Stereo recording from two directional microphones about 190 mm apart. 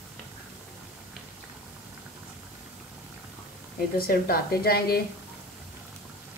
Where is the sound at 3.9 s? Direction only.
50° left (ahead or behind).